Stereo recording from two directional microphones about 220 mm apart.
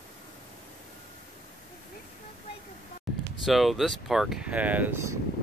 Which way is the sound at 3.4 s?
Centre (ahead or behind).